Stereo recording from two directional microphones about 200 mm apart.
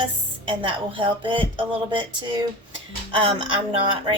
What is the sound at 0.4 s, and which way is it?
Speech, 25° right (ahead or behind).